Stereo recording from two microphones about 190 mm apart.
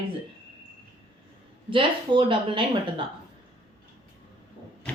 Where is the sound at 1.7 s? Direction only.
25° right (ahead or behind).